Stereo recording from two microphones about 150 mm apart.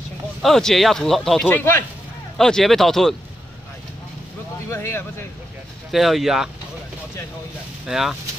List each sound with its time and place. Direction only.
0.4 s speech: centre (ahead or behind)
1.5 s speech: 15° left (ahead or behind)
2.3 s speech: 5° left (ahead or behind)
4.6 s speech: 15° left (ahead or behind)
5.9 s speech: centre (ahead or behind)
7.8 s speech: 5° right (ahead or behind)